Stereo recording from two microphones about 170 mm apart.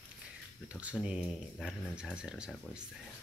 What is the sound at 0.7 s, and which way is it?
Speech, 5° right (ahead or behind).